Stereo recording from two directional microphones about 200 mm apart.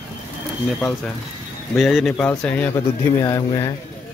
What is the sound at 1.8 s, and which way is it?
Speech, centre (ahead or behind).